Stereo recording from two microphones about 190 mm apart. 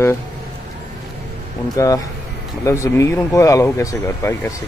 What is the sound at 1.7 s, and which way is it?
Speech, 20° left (ahead or behind).